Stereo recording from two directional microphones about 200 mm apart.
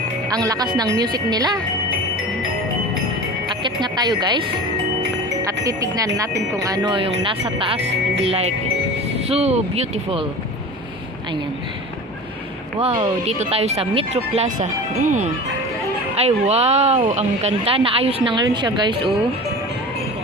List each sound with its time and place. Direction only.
0.3 s speech: 20° right (ahead or behind)
3.5 s speech: 20° right (ahead or behind)
12.8 s speech: 25° right (ahead or behind)